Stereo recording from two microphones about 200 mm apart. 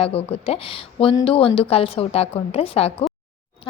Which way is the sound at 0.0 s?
30° left (ahead or behind).